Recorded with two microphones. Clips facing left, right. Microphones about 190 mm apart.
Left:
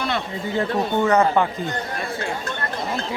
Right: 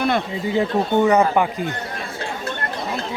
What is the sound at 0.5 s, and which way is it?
Speech, 15° right (ahead or behind).